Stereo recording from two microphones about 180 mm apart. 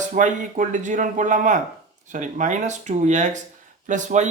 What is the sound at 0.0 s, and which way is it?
Speech, 45° right (ahead or behind).